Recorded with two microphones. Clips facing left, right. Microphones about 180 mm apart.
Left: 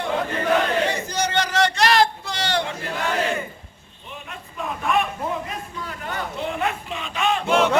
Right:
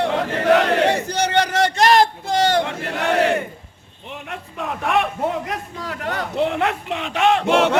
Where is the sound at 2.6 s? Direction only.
70° right (ahead or behind).